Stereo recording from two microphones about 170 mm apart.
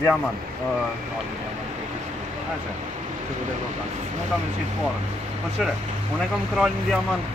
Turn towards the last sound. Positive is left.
turn(degrees=0)  # may be behind; listen again after turning